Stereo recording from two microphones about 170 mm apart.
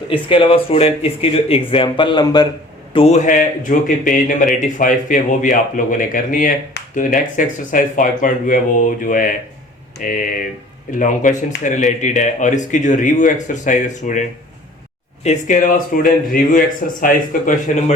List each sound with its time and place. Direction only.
0.1 s speech: 30° left (ahead or behind)
2.9 s speech: 40° left (ahead or behind)
15.2 s speech: 45° left (ahead or behind)